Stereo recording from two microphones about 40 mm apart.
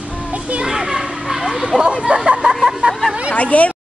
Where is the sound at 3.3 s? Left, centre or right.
Left.